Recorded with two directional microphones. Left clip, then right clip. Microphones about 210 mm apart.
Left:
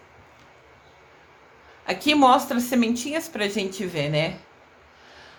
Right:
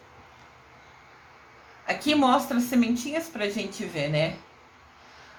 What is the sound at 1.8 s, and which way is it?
A woman's voice, 30° left (ahead or behind).